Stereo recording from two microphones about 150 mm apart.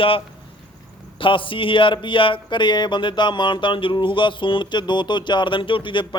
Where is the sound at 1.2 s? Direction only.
35° left (ahead or behind).